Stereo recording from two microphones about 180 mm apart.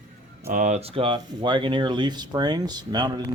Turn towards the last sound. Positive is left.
turn(degrees=-25)  # may be behind; listen again after turning